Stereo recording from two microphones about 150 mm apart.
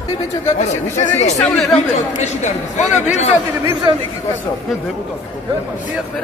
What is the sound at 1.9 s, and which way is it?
Speech, 50° left (ahead or behind).